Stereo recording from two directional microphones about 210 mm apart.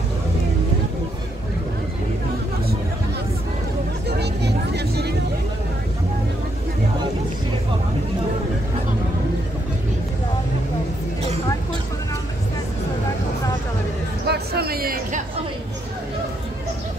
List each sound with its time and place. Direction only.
4.1 s vehicle: 50° right (ahead or behind)
14.2 s music: 50° right (ahead or behind)